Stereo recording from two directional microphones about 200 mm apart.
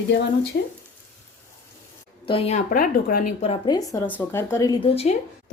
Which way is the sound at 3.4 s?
25° left (ahead or behind).